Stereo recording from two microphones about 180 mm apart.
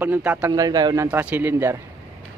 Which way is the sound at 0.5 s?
20° right (ahead or behind).